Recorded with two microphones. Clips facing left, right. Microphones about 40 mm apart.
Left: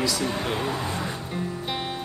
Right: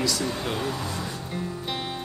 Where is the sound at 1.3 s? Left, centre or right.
Centre.